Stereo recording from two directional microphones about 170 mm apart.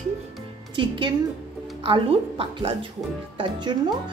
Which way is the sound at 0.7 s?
30° right (ahead or behind).